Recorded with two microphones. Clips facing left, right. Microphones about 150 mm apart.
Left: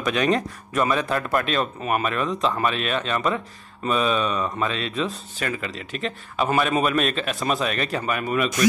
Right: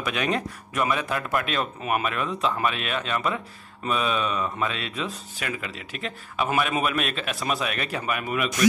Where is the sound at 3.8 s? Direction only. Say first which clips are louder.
Left 3 dB; 35° left (ahead or behind).